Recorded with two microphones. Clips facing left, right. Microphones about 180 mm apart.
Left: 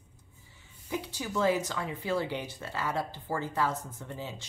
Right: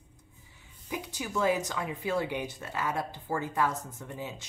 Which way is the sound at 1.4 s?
15° right (ahead or behind).